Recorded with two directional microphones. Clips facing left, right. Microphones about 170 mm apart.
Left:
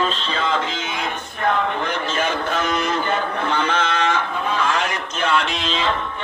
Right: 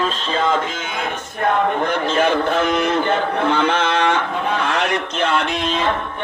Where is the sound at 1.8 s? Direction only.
55° right (ahead or behind).